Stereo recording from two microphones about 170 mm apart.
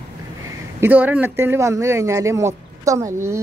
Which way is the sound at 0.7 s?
10° right (ahead or behind).